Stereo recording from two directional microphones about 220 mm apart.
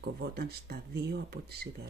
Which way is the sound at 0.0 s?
45° right (ahead or behind).